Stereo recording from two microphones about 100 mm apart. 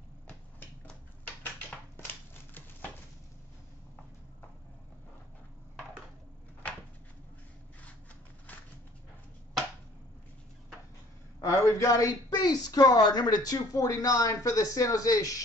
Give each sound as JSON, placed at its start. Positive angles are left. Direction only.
{"t": 11.4, "sound": "speech", "side_deg": 30}